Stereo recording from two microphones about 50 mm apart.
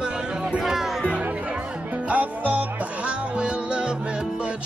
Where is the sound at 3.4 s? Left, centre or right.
Right.